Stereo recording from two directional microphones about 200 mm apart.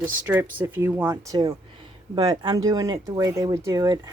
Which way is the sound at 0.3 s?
10° right (ahead or behind).